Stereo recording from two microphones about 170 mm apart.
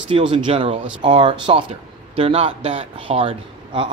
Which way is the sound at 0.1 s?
30° right (ahead or behind).